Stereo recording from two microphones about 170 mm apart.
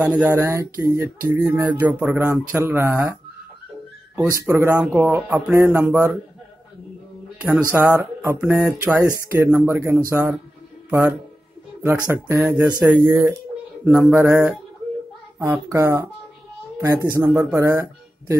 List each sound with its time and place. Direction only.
0.0 s mantra: 10° right (ahead or behind)
4.3 s mantra: 15° right (ahead or behind)
7.3 s speech: 10° right (ahead or behind)
7.7 s mantra: 10° right (ahead or behind)
10.9 s speech: 15° right (ahead or behind)
12.1 s mantra: 15° right (ahead or behind)